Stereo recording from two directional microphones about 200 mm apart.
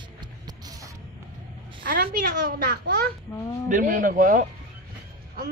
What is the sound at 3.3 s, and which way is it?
Speech, 10° left (ahead or behind).